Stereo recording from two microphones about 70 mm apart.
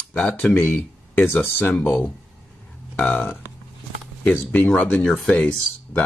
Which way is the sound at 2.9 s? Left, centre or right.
Centre.